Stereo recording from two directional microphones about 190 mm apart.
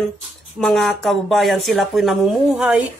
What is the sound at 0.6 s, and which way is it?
Speech, centre (ahead or behind).